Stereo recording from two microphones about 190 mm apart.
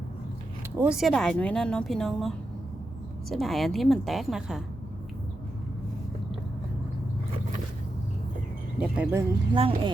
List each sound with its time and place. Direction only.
0.8 s a woman's voice: 5° right (ahead or behind)
8.8 s speech: 5° right (ahead or behind)
9.5 s speech: 25° right (ahead or behind)